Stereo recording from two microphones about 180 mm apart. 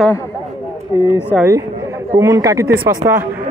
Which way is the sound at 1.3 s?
10° left (ahead or behind).